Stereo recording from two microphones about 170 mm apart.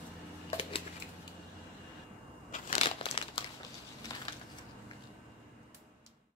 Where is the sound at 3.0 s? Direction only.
30° left (ahead or behind).